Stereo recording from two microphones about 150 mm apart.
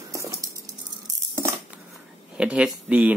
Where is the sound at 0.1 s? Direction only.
20° right (ahead or behind).